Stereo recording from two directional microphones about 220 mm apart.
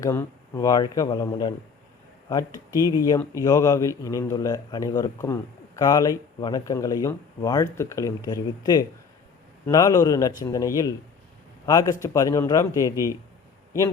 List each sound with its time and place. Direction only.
0.0 s a man's voice: 15° left (ahead or behind)